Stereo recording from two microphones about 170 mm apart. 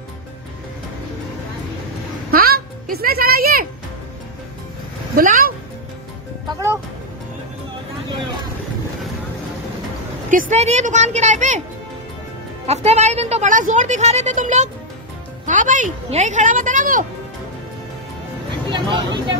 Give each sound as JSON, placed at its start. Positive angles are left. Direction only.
{"t": 2.3, "sound": "music", "side_deg": -60}
{"t": 5.1, "sound": "speech", "side_deg": -55}
{"t": 6.5, "sound": "music", "side_deg": -15}
{"t": 10.3, "sound": "a woman's voice", "side_deg": -40}
{"t": 12.6, "sound": "a woman's voice", "side_deg": -40}
{"t": 18.7, "sound": "speech", "side_deg": -25}